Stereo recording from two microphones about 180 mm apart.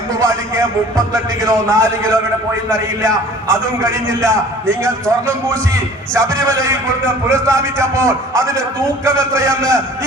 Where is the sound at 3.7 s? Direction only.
15° right (ahead or behind).